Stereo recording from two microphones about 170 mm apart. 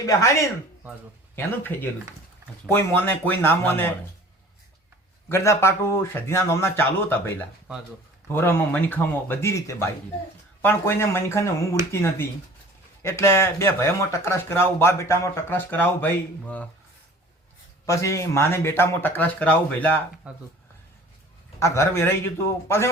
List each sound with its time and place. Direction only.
0.0 s speech: 15° left (ahead or behind)
5.3 s speech: 15° left (ahead or behind)
17.8 s speech: 20° left (ahead or behind)
20.2 s speech: 5° right (ahead or behind)
21.6 s speech: 15° left (ahead or behind)